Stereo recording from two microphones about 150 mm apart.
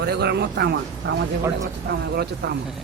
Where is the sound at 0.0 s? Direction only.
90° right.